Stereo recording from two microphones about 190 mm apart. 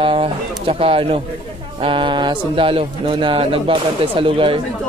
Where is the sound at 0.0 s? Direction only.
30° right (ahead or behind).